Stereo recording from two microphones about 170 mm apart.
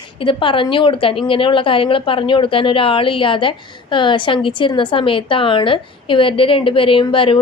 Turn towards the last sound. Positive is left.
turn(degrees=30)  # may be behind; listen again after turning